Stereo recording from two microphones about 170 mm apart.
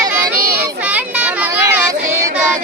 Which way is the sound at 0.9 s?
10° right (ahead or behind).